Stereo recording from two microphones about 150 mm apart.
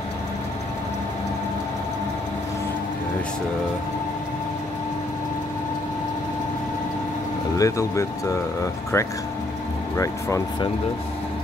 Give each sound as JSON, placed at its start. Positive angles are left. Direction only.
{"t": 7.5, "sound": "speech", "side_deg": 20}